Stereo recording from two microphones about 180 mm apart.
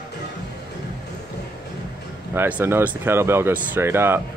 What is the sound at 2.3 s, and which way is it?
Speech, 10° right (ahead or behind).